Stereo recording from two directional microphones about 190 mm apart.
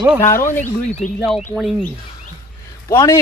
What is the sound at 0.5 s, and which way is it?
Speech, 10° left (ahead or behind).